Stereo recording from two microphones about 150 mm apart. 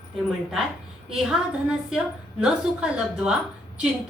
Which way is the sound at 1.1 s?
5° right (ahead or behind).